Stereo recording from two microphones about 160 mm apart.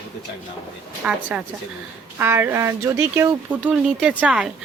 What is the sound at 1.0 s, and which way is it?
A woman's voice, 5° right (ahead or behind).